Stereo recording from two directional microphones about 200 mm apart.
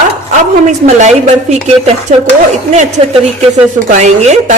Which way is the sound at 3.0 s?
35° right (ahead or behind).